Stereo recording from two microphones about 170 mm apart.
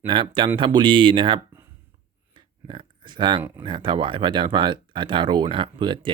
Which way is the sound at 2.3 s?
30° right (ahead or behind).